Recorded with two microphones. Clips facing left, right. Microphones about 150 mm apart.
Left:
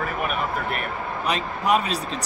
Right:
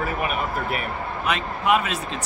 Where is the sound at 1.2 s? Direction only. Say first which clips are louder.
Right 1 dB; 35° left (ahead or behind).